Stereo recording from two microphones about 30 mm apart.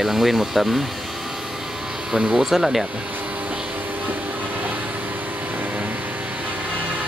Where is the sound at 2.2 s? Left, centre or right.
Right.